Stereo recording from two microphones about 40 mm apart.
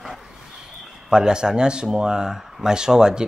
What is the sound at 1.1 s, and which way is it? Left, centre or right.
Speech, centre.